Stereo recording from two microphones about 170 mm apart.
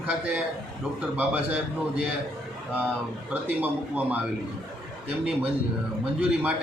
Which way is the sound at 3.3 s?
10° right (ahead or behind).